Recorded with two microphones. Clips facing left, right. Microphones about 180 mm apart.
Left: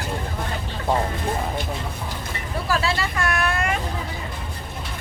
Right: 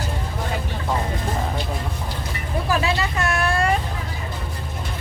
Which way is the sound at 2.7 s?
20° right (ahead or behind).